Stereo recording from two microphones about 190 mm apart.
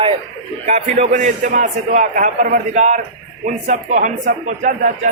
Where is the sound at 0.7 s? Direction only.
40° right (ahead or behind).